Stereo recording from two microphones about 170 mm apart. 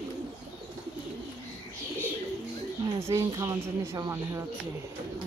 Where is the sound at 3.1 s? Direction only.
20° right (ahead or behind).